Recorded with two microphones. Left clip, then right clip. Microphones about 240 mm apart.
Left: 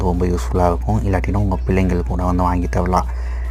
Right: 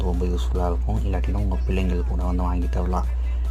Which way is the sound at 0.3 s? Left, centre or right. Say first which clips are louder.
Left 10 dB; left.